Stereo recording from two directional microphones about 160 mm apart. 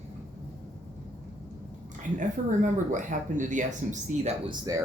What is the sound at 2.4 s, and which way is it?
Speech, 50° right (ahead or behind).